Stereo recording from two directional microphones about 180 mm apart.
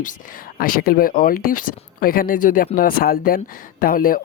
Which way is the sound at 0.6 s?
55° left (ahead or behind).